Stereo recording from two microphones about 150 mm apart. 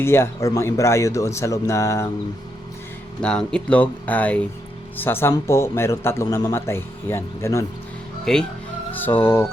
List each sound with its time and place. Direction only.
0.0 s speech: 15° left (ahead or behind)
3.2 s speech: 5° left (ahead or behind)
8.2 s speech: 5° left (ahead or behind)